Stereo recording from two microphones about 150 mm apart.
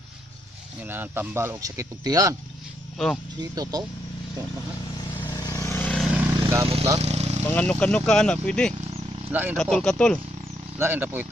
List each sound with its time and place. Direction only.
0.8 s speech: 15° right (ahead or behind)
3.6 s speech: 25° right (ahead or behind)
5.2 s vehicle: 20° left (ahead or behind)
6.0 s vehicle: 10° right (ahead or behind)
6.3 s vehicle: 25° right (ahead or behind)
6.6 s speech: 40° right (ahead or behind)
7.0 s vehicle: 45° right (ahead or behind)
7.4 s speech: 10° left (ahead or behind)
9.3 s speech: 10° right (ahead or behind)
9.6 s speech: 5° left (ahead or behind)
10.8 s speech: 15° right (ahead or behind)